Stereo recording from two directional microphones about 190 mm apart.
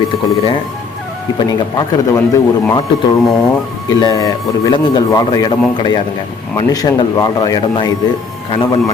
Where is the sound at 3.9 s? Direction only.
20° left (ahead or behind).